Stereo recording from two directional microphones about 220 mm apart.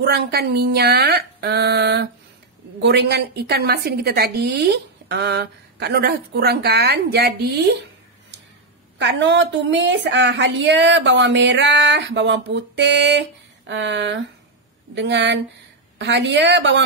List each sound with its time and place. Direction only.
0.0 s a woman's voice: 45° right (ahead or behind)
8.9 s a woman's voice: 55° right (ahead or behind)